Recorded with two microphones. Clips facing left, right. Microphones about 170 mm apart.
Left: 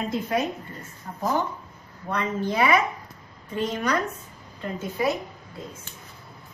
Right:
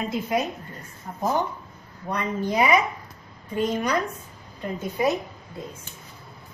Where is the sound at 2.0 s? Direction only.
15° right (ahead or behind).